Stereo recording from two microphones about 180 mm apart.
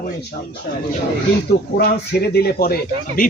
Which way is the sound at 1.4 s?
60° left (ahead or behind).